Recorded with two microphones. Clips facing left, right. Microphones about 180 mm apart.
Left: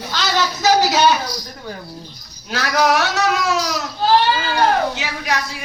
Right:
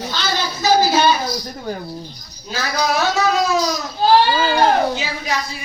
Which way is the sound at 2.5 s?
75° left (ahead or behind).